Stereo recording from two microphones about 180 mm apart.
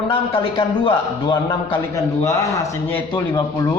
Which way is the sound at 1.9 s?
15° left (ahead or behind).